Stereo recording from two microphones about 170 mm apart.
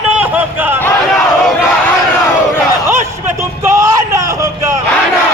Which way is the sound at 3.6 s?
15° right (ahead or behind).